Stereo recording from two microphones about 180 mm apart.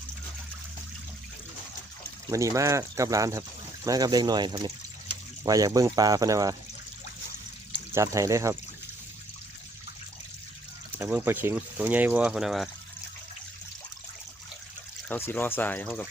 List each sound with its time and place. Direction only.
2.3 s speech: 15° right (ahead or behind)
7.9 s speech: 15° right (ahead or behind)
10.9 s speech: 10° right (ahead or behind)
15.1 s speech: 10° left (ahead or behind)